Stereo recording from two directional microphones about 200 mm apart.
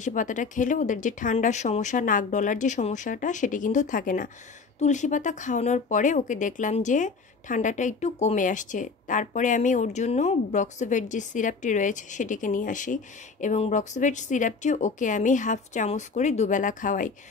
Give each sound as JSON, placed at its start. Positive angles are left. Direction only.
{"t": 0.0, "sound": "speech", "side_deg": 40}